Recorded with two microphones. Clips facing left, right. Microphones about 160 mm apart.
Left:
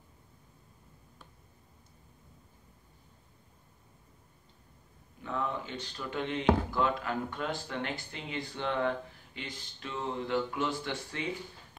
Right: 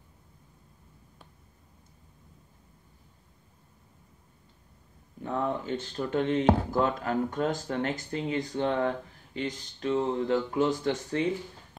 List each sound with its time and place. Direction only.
5.2 s speech: 40° right (ahead or behind)